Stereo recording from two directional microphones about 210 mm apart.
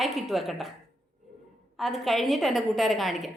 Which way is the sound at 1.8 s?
Centre (ahead or behind).